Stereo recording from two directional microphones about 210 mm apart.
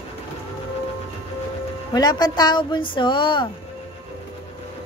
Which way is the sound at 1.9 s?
20° left (ahead or behind).